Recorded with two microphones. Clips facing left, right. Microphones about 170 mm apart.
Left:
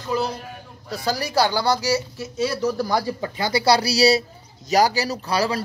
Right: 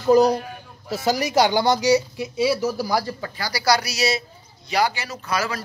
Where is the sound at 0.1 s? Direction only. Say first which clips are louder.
Right 9 dB; 40° right (ahead or behind).